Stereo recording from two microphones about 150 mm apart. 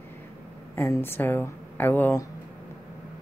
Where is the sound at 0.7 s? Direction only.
20° left (ahead or behind).